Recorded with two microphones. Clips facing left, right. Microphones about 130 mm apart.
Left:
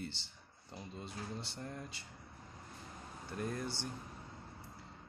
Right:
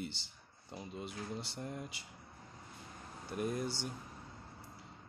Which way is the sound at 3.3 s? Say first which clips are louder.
Right 3 dB; 15° right (ahead or behind).